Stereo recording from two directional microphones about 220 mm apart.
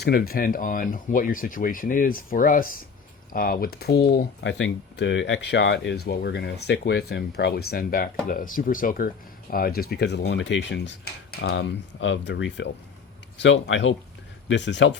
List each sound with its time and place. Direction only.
0.0 s speech: 45° left (ahead or behind)
3.3 s cutlery: 40° left (ahead or behind)
13.4 s speech: 60° left (ahead or behind)